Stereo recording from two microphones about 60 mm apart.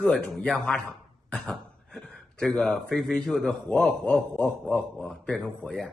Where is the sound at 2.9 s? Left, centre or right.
Centre.